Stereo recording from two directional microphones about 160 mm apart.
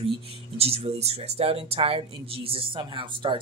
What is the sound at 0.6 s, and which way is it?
Speech, 40° right (ahead or behind).